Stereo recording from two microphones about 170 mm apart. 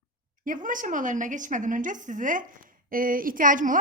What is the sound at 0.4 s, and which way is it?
A woman's voice, 50° right (ahead or behind).